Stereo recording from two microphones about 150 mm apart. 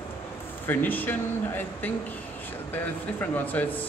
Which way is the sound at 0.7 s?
10° left (ahead or behind).